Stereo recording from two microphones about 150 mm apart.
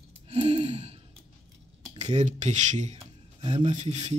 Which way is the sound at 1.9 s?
50° right (ahead or behind).